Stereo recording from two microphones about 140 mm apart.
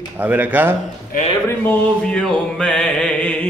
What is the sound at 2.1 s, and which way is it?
Mantra, 5° left (ahead or behind).